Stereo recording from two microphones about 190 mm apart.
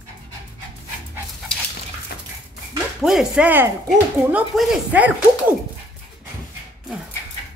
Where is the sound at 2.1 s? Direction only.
60° left (ahead or behind).